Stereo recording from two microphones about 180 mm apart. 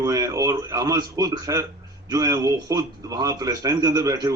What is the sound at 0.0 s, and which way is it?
A man's voice, 20° right (ahead or behind).